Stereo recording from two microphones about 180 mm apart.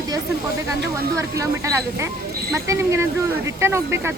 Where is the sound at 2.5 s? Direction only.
15° right (ahead or behind).